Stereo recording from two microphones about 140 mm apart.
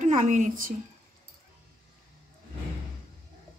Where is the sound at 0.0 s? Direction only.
60° right (ahead or behind).